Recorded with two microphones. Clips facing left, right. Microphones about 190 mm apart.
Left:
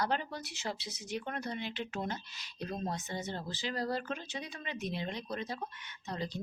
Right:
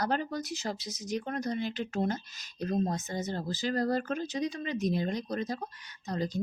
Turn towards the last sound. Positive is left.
turn(degrees=-45)  # may be behind; listen again after turning